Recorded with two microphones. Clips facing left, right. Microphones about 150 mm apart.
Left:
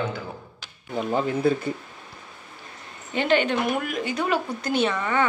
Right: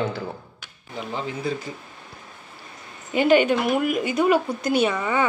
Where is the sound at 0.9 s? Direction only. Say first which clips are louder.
Left 6 dB; 50° left (ahead or behind).